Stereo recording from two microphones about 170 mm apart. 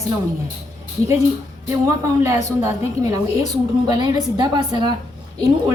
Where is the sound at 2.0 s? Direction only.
20° right (ahead or behind).